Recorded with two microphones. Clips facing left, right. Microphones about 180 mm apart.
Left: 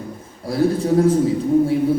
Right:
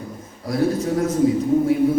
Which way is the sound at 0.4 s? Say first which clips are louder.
Left 2 dB; 30° left (ahead or behind).